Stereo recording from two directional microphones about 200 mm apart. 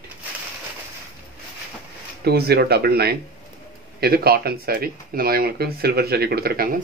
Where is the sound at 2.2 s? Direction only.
55° right (ahead or behind).